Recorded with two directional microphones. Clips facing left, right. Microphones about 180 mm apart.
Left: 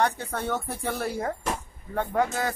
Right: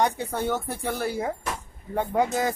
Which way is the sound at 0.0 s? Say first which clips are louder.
Right 2 dB; 10° right (ahead or behind).